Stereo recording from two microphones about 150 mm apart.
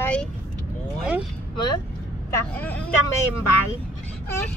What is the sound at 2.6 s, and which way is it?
Speech, 10° left (ahead or behind).